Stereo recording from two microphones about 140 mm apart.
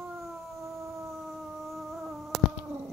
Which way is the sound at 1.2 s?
Centre (ahead or behind).